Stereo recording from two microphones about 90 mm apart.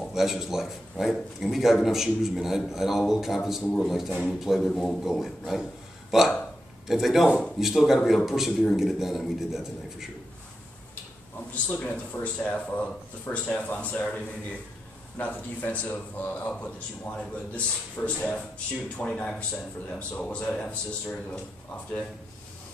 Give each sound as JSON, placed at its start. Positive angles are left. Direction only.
{"t": 0.1, "sound": "a man's voice", "side_deg": -5}
{"t": 11.3, "sound": "a man's voice", "side_deg": 20}